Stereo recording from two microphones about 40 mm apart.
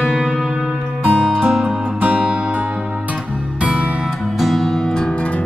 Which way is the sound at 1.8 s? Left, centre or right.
Right.